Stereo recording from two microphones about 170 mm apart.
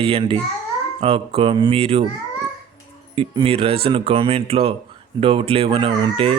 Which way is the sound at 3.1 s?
35° right (ahead or behind).